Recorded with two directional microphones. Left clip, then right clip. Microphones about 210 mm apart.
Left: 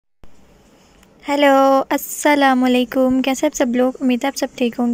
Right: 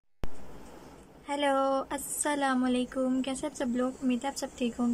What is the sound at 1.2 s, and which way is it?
A woman's voice, 30° left (ahead or behind).